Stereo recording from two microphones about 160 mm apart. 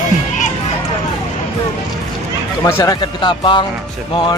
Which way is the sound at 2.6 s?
20° left (ahead or behind).